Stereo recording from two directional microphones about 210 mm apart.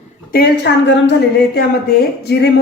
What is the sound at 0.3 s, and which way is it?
A woman's voice, 45° left (ahead or behind).